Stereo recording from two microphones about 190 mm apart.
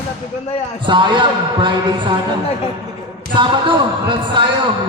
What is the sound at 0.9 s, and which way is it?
Speech, 25° right (ahead or behind).